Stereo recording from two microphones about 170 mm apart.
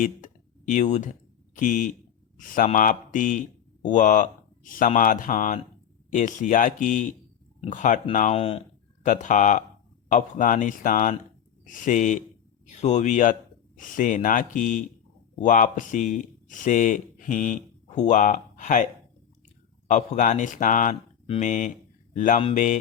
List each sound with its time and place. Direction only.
0.0 s a sound: 50° left (ahead or behind)
1.5 s speech: 50° left (ahead or behind)
9.0 s speech: 50° left (ahead or behind)
19.9 s speech: 45° left (ahead or behind)